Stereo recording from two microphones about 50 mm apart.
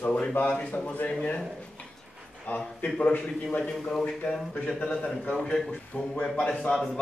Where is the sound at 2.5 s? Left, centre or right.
Left.